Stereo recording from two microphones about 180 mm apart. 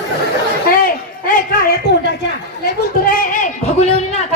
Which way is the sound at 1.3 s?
55° left (ahead or behind).